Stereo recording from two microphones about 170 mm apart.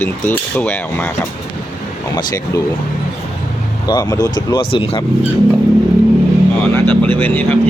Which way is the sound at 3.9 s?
20° left (ahead or behind).